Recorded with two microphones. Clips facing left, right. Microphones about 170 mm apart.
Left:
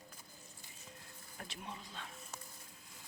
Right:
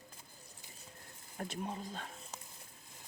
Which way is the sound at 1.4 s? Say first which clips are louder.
Right 8 dB; 40° right (ahead or behind).